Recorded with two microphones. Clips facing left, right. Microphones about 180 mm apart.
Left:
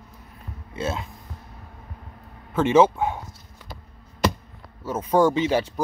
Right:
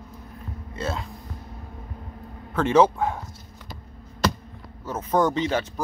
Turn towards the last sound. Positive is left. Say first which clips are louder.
# left 3 dB
turn(degrees=10)  # may be behind; listen again after turning